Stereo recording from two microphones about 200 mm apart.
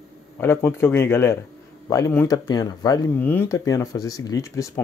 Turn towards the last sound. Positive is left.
turn(degrees=15)  # may be behind; listen again after turning